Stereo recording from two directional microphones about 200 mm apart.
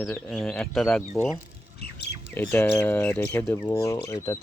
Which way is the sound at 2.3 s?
10° left (ahead or behind).